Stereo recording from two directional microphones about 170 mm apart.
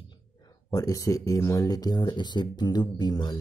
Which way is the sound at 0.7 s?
20° left (ahead or behind).